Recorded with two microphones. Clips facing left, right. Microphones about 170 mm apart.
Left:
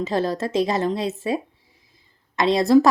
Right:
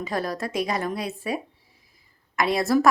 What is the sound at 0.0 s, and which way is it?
Speech, 25° left (ahead or behind).